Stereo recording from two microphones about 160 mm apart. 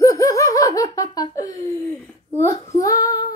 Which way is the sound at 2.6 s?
20° left (ahead or behind).